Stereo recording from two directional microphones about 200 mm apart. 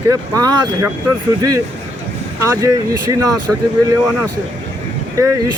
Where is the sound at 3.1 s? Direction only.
15° right (ahead or behind).